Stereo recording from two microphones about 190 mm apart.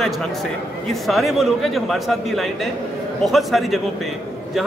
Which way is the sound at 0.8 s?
Centre (ahead or behind).